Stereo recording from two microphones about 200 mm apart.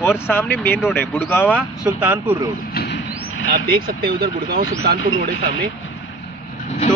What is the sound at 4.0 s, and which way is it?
Speech, 50° right (ahead or behind).